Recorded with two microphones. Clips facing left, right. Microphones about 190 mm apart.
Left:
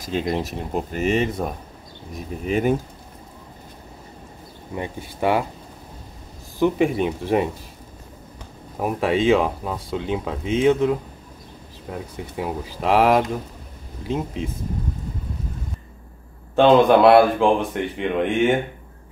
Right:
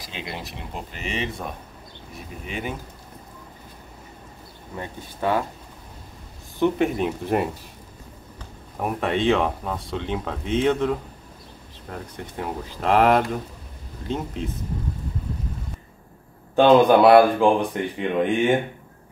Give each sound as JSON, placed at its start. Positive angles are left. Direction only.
{"t": 0.0, "sound": "speech", "side_deg": 45}
{"t": 4.7, "sound": "speech", "side_deg": 15}
{"t": 6.6, "sound": "speech", "side_deg": 0}
{"t": 8.7, "sound": "speech", "side_deg": 5}
{"t": 16.5, "sound": "speech", "side_deg": 0}